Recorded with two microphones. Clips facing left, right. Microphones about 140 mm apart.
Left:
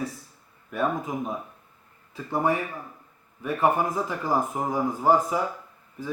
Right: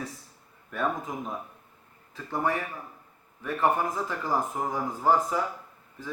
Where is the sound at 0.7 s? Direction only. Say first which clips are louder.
Left 3 dB; 10° left (ahead or behind).